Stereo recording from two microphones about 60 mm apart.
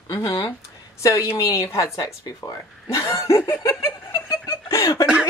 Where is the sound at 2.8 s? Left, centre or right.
Left.